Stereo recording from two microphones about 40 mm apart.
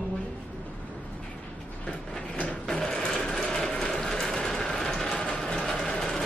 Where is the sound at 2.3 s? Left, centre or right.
Left.